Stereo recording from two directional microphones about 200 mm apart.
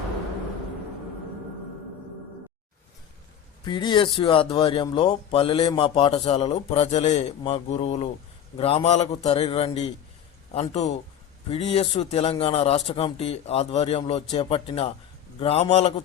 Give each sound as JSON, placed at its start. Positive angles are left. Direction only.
{"t": 3.6, "sound": "a man's voice", "side_deg": 25}